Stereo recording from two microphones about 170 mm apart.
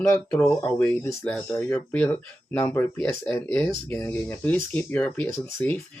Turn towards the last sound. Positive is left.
turn(degrees=10)  # may be behind; listen again after turning